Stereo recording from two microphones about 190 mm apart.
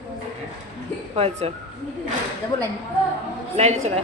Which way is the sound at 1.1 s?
35° right (ahead or behind).